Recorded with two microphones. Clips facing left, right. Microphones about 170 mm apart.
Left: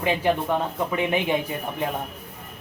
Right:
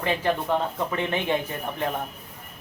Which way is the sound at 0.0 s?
15° left (ahead or behind).